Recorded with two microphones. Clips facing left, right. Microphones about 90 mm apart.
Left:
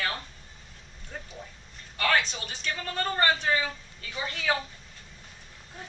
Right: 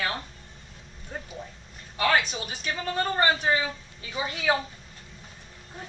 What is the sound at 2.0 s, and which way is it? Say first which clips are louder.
Speech: right 2 dB; 10° right (ahead or behind).